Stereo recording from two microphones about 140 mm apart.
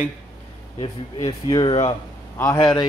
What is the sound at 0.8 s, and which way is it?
A man's voice, 35° left (ahead or behind).